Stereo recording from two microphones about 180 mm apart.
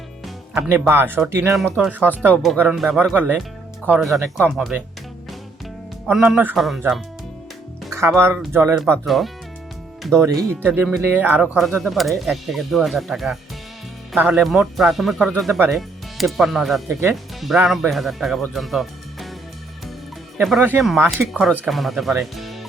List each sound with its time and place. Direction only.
0.5 s speech: 10° right (ahead or behind)
6.1 s speech: 5° right (ahead or behind)
7.9 s speech: 15° right (ahead or behind)
9.0 s speech: centre (ahead or behind)
10.2 s speech: 15° right (ahead or behind); by 19.3 s centre (ahead or behind)
20.4 s speech: centre (ahead or behind)